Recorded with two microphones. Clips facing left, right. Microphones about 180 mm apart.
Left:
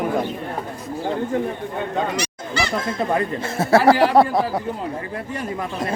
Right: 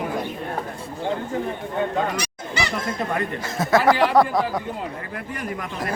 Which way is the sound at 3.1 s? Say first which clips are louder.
Left 4 dB; 30° left (ahead or behind).